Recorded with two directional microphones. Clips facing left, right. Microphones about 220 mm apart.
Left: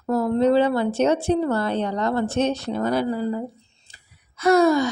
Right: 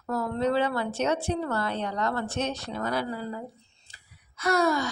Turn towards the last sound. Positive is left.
turn(degrees=20)  # may be behind; listen again after turning